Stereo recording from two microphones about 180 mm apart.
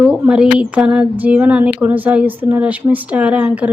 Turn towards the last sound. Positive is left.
turn(degrees=-5)  # may be behind; listen again after turning